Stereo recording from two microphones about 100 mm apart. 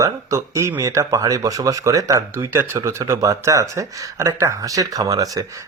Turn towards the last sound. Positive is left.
turn(degrees=-35)  # may be behind; listen again after turning